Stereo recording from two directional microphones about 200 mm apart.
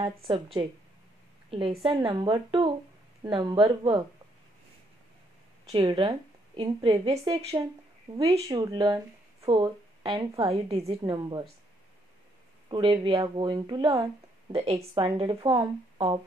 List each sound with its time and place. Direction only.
0.0 s speech: 25° right (ahead or behind)
5.7 s speech: 25° right (ahead or behind)
12.6 s speech: 25° right (ahead or behind)